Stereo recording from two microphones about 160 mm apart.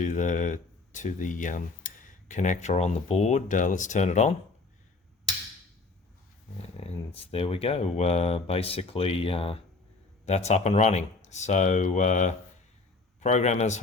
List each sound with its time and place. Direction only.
0.0 s speech: 55° left (ahead or behind)
6.7 s speech: 40° left (ahead or behind)